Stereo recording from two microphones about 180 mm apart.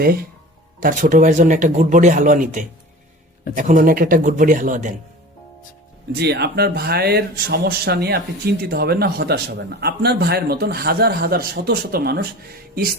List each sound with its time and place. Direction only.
0.0 s speech: 55° right (ahead or behind)
6.1 s speech: 65° right (ahead or behind)